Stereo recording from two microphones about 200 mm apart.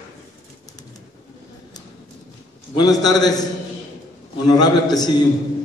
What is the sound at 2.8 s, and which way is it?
Speech, 20° left (ahead or behind).